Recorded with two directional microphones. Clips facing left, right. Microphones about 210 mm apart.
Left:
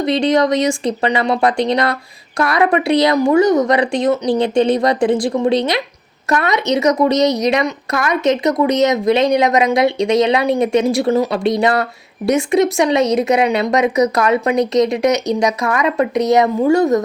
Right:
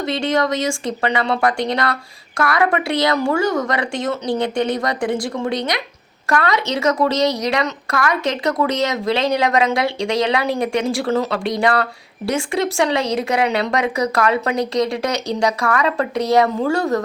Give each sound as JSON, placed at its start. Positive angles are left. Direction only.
{"t": 0.0, "sound": "speech", "side_deg": 20}